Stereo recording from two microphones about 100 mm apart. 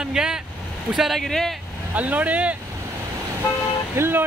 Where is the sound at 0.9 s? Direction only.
Centre (ahead or behind).